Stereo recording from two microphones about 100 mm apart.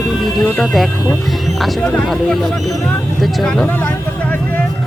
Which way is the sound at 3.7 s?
20° left (ahead or behind).